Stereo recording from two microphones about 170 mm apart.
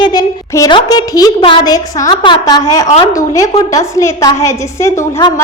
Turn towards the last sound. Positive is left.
turn(degrees=20)  # may be behind; listen again after turning